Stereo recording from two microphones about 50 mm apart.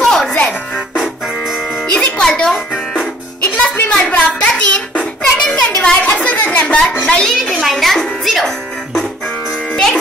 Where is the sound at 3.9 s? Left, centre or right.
Left.